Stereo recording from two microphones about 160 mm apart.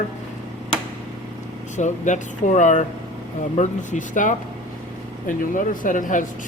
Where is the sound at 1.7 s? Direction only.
50° left (ahead or behind).